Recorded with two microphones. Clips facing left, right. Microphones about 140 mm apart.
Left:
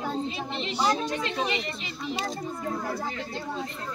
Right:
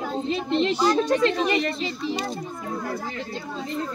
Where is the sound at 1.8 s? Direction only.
30° right (ahead or behind).